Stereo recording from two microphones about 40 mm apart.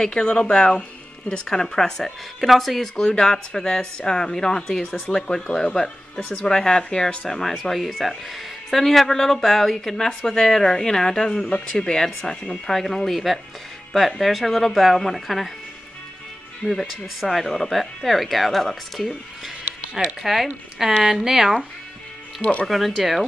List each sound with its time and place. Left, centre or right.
0.0 s speech: left; by 2.9 s centre
3.0 s speech: centre
7.2 s speech: centre
16.8 s speech: centre
20.2 s speech: centre
22.4 s speech: left
22.7 s speech: centre